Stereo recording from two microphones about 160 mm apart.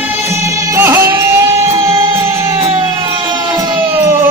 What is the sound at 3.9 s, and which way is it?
Music, 15° right (ahead or behind).